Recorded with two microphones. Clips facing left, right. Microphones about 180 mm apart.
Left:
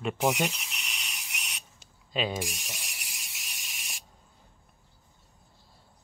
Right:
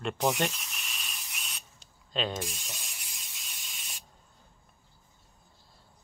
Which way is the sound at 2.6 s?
10° left (ahead or behind).